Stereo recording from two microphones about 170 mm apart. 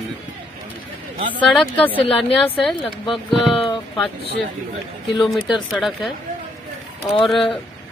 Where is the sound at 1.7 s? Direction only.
10° left (ahead or behind).